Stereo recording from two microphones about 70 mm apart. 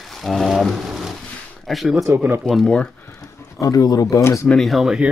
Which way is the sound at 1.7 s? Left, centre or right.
Centre.